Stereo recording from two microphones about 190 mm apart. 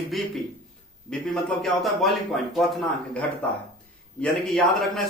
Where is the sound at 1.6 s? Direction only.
Centre (ahead or behind).